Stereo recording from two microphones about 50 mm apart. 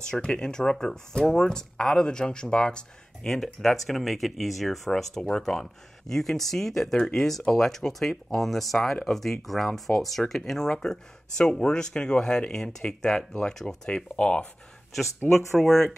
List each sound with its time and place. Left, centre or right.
0.0 s speech: centre
3.3 s speech: centre; by 14.5 s left
15.5 s speech: centre